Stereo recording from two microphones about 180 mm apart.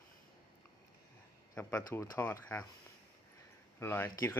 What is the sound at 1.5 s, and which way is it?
Speech, 15° left (ahead or behind).